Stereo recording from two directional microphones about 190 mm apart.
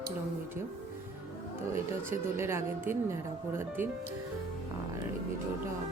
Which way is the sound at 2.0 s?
15° right (ahead or behind).